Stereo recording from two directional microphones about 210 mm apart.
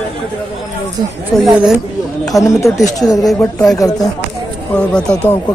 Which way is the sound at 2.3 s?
15° left (ahead or behind).